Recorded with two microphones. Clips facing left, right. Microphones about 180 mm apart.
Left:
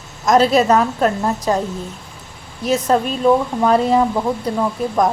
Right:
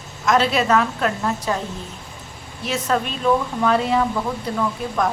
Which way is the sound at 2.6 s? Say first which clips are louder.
Left 6 dB; 40° left (ahead or behind).